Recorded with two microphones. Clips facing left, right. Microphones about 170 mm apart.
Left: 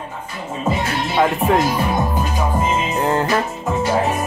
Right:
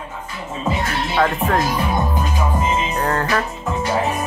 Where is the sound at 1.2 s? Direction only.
15° left (ahead or behind).